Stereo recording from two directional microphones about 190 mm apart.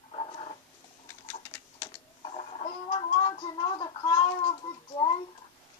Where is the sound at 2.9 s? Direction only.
25° left (ahead or behind).